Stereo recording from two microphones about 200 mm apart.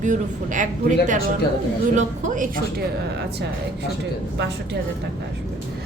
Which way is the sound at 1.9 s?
40° right (ahead or behind).